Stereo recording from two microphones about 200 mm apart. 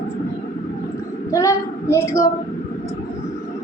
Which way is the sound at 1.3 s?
15° left (ahead or behind).